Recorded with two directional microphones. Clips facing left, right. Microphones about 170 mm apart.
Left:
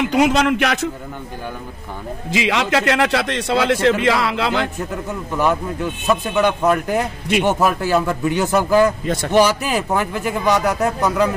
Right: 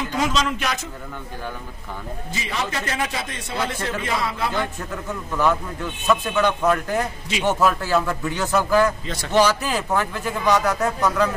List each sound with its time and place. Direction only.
0.0 s a man's voice: 70° left (ahead or behind)
2.3 s a man's voice: 90° left
6.0 s speech: 20° left (ahead or behind)
9.0 s a man's voice: 50° left (ahead or behind)
9.3 s speech: 15° left (ahead or behind)